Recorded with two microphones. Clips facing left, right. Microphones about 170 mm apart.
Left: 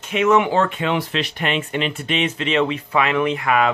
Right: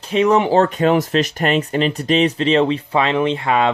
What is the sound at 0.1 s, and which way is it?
Speech, 35° right (ahead or behind).